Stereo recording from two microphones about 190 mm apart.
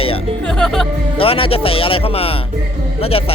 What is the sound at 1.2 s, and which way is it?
A man's voice, 30° left (ahead or behind).